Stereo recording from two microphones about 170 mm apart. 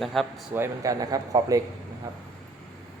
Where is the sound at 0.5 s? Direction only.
15° right (ahead or behind).